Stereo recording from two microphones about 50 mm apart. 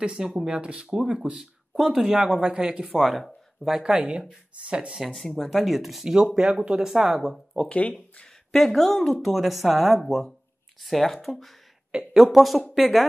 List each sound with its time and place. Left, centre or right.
0.0 s speech: centre
2.9 s speech: centre
4.6 s speech: right
5.3 s speech: centre
6.4 s speech: right
6.8 s speech: centre
7.6 s speech: left
8.5 s speech: centre